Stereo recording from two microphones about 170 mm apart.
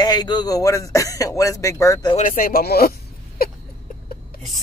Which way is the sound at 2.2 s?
55° left (ahead or behind).